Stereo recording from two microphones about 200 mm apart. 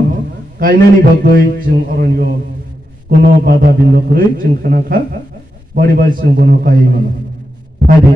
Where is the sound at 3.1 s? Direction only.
50° right (ahead or behind).